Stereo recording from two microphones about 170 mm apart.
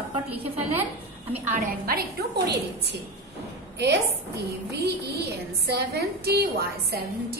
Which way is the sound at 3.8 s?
80° right.